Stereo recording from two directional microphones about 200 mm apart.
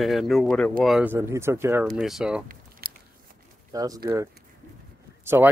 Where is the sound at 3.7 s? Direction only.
20° right (ahead or behind).